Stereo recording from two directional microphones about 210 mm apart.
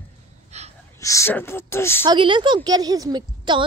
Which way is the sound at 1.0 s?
15° left (ahead or behind).